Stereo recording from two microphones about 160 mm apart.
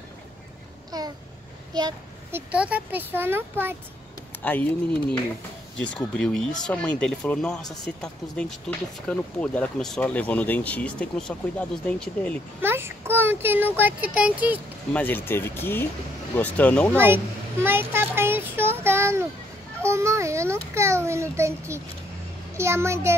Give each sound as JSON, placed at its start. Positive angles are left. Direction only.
{"t": 0.9, "sound": "babbling", "side_deg": -25}
{"t": 1.7, "sound": "speech", "side_deg": -25}
{"t": 2.3, "sound": "speech", "side_deg": -10}
{"t": 4.4, "sound": "speech", "side_deg": 10}
{"t": 5.8, "sound": "speech", "side_deg": 5}
{"t": 12.6, "sound": "speech", "side_deg": -15}
{"t": 14.9, "sound": "speech", "side_deg": 10}
{"t": 17.6, "sound": "child singing", "side_deg": -15}
{"t": 19.8, "sound": "a child's voice", "side_deg": -15}